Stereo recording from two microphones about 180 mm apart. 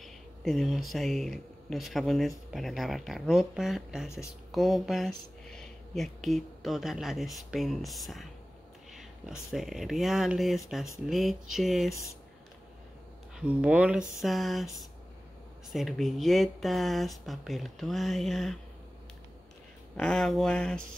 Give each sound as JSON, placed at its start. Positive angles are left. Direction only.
{"t": 0.0, "sound": "speech", "side_deg": 0}
{"t": 9.5, "sound": "speech", "side_deg": 0}
{"t": 13.4, "sound": "speech", "side_deg": -5}
{"t": 20.0, "sound": "speech", "side_deg": 5}